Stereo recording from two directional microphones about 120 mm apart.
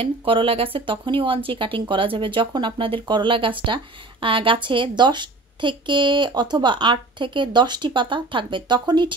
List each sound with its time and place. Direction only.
0.0 s speech: 50° right (ahead or behind)